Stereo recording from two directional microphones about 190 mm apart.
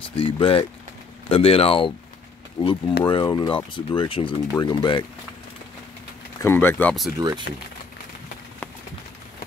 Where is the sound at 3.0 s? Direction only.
25° left (ahead or behind).